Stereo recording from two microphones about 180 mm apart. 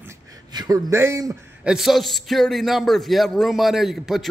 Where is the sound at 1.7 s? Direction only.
Centre (ahead or behind).